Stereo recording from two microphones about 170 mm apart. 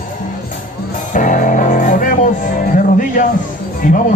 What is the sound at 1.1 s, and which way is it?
Music, 50° left (ahead or behind).